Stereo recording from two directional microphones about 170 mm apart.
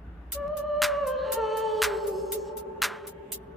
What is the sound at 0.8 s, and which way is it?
Music, centre (ahead or behind).